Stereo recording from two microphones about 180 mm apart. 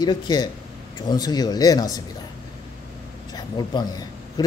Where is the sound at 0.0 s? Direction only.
25° left (ahead or behind).